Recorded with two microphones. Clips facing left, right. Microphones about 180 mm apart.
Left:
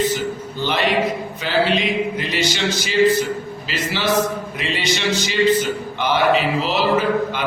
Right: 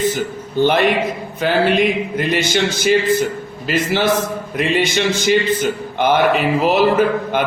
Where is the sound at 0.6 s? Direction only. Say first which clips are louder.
Right 5 dB; 55° right (ahead or behind).